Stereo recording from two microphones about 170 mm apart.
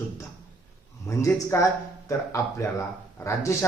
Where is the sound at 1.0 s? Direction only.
20° left (ahead or behind).